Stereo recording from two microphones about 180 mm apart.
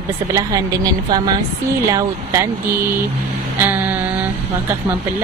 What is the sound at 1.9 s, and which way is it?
Speech, 15° right (ahead or behind).